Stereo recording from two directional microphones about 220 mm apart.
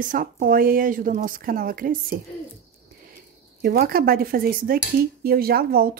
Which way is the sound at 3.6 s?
45° right (ahead or behind).